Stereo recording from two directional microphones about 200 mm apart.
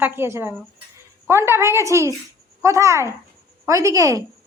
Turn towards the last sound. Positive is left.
turn(degrees=-15)  # may be behind; listen again after turning